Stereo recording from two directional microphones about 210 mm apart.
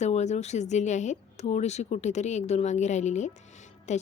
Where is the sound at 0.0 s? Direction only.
35° left (ahead or behind).